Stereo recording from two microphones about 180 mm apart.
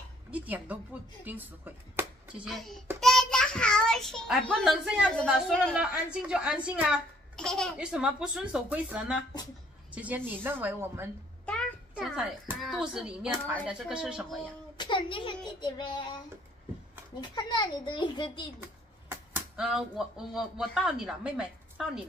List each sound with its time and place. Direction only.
0.3 s a child's voice: 10° right (ahead or behind)
7.3 s speech: 5° left (ahead or behind); by 11.1 s 10° right (ahead or behind)
11.4 s music: 5° left (ahead or behind)
11.9 s speech: 5° right (ahead or behind)
14.8 s a child's voice: 25° left (ahead or behind)
17.2 s a child's voice: 25° left (ahead or behind)
18.6 s speech: 10° right (ahead or behind)